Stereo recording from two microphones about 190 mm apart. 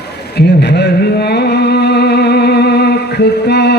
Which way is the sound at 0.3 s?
60° left (ahead or behind).